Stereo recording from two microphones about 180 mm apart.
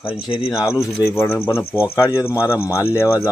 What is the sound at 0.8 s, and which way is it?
Speech, 15° left (ahead or behind).